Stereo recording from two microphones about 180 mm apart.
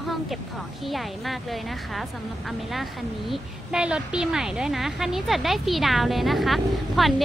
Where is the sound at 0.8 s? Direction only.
Centre (ahead or behind).